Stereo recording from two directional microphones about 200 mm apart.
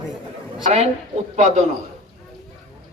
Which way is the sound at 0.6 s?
35° right (ahead or behind).